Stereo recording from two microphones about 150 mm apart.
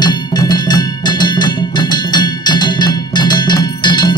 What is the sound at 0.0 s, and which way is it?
Music, 25° left (ahead or behind).